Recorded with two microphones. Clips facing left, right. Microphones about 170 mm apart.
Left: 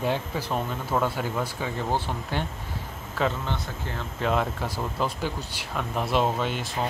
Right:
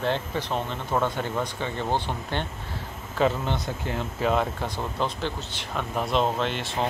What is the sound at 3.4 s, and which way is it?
Speech, 15° right (ahead or behind).